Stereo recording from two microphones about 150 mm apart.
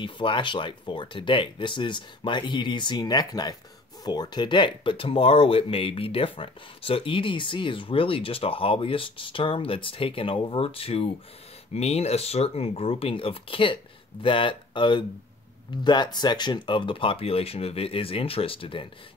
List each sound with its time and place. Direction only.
0.0 s speech: 35° left (ahead or behind)